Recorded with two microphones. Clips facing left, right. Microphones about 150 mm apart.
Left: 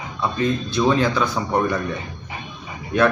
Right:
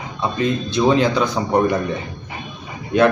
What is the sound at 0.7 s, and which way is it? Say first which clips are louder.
A man's voice: right 4 dB; 20° right (ahead or behind).